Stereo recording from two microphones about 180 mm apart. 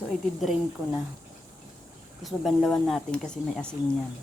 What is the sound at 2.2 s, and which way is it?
Speech, centre (ahead or behind).